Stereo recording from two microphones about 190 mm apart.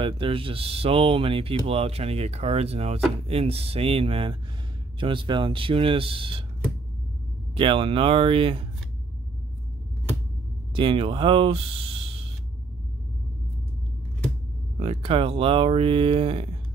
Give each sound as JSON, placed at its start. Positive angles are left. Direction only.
{"t": 0.0, "sound": "speech", "side_deg": -30}
{"t": 7.5, "sound": "speech", "side_deg": -30}
{"t": 10.7, "sound": "speech", "side_deg": -25}
{"t": 14.8, "sound": "speech", "side_deg": -30}